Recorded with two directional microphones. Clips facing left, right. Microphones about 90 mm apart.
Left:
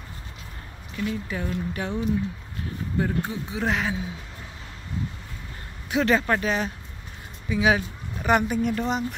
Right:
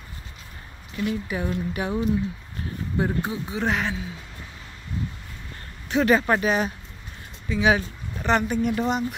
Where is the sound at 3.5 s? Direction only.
Centre (ahead or behind).